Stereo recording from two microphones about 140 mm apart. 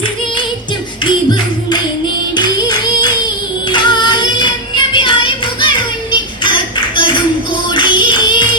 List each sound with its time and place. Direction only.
2.3 s music: 30° left (ahead or behind)
3.7 s child singing: 35° left (ahead or behind)
7.7 s singing: 35° left (ahead or behind)